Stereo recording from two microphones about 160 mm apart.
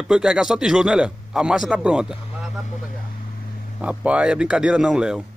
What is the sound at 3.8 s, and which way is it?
Speech, 10° right (ahead or behind).